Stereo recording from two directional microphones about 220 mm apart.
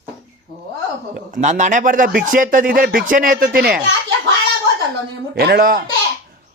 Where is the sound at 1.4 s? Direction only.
35° right (ahead or behind).